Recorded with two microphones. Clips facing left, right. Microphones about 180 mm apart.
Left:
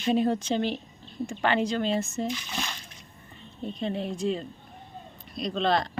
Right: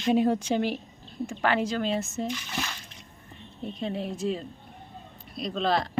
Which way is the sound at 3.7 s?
5° right (ahead or behind).